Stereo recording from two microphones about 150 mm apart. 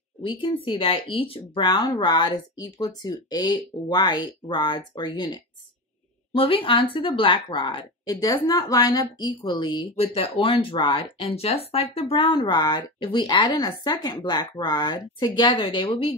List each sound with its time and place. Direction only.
0.2 s speech: 35° left (ahead or behind)